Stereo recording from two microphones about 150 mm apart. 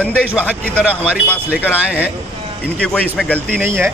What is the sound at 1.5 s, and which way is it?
Speech, 10° right (ahead or behind).